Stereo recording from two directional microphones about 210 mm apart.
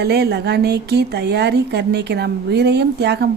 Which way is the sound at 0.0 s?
50° right (ahead or behind).